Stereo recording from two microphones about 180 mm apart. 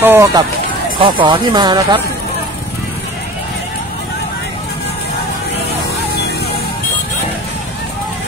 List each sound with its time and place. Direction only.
0.0 s speech: 15° right (ahead or behind)